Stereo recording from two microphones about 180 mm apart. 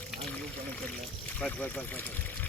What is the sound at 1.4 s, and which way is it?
Speech, 5° left (ahead or behind).